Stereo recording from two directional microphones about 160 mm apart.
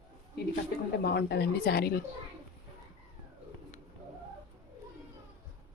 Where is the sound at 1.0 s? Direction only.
90° left.